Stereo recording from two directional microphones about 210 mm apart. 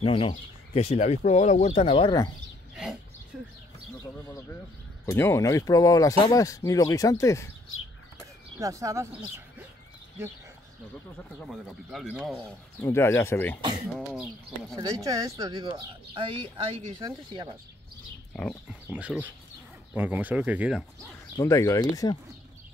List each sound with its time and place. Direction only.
0.0 s speech: 25° left (ahead or behind)
2.7 s speech: centre (ahead or behind)
4.0 s speech: 10° left (ahead or behind)
8.5 s speech: 15° right (ahead or behind)
11.4 s speech: centre (ahead or behind)
12.8 s speech: 10° left (ahead or behind)
14.8 s speech: 15° right (ahead or behind)
18.7 s speech: 5° right (ahead or behind)
21.4 s speech: 15° left (ahead or behind)